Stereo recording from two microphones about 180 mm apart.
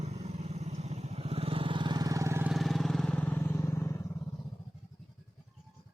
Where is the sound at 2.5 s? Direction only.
Centre (ahead or behind).